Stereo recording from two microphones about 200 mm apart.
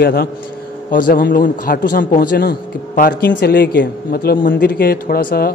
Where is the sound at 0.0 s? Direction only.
50° left (ahead or behind).